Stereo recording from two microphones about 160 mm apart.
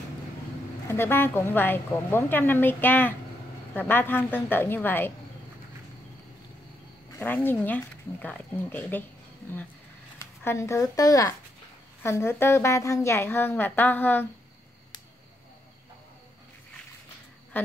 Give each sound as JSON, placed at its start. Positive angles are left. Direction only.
{"t": 0.8, "sound": "speech", "side_deg": 15}
{"t": 7.2, "sound": "speech", "side_deg": 10}
{"t": 10.1, "sound": "speech", "side_deg": 15}
{"t": 17.5, "sound": "a sound", "side_deg": 10}